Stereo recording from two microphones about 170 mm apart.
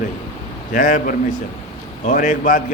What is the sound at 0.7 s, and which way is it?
A man's voice, 50° left (ahead or behind).